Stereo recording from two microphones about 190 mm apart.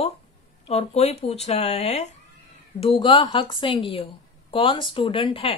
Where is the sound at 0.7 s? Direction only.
35° left (ahead or behind).